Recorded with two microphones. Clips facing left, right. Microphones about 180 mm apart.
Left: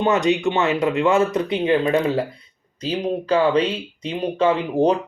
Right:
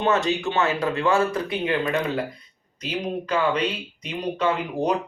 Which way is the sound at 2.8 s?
30° left (ahead or behind).